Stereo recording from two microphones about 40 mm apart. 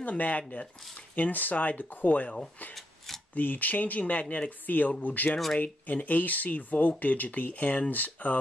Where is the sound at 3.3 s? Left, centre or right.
Left.